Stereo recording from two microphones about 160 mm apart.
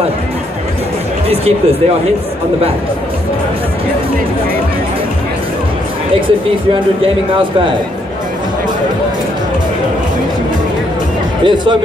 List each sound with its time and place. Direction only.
11.4 s speech: 30° right (ahead or behind)